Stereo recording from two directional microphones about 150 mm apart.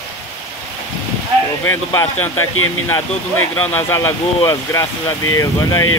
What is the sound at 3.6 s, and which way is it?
Speech, 10° left (ahead or behind).